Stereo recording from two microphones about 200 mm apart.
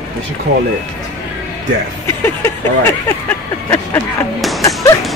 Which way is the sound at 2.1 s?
10° left (ahead or behind).